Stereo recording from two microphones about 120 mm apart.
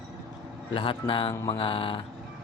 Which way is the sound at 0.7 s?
45° left (ahead or behind).